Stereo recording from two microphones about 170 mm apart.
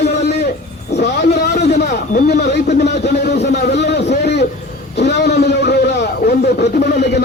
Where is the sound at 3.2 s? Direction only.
80° left.